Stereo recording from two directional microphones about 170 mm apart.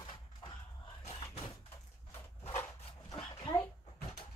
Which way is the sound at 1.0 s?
30° left (ahead or behind).